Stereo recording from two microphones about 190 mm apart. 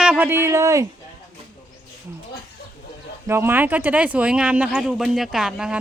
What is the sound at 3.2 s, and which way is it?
Speech, 10° right (ahead or behind).